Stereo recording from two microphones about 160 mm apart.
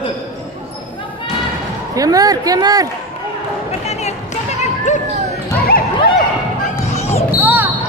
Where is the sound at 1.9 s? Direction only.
20° right (ahead or behind).